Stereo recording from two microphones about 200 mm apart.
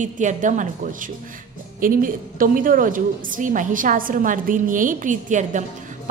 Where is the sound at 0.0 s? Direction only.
40° right (ahead or behind).